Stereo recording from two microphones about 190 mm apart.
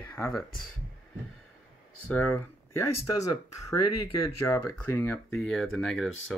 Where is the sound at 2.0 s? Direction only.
10° left (ahead or behind).